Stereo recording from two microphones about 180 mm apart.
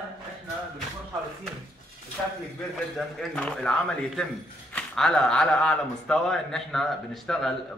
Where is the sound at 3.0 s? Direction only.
5° left (ahead or behind).